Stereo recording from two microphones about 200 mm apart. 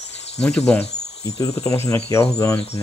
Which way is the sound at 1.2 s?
15° left (ahead or behind).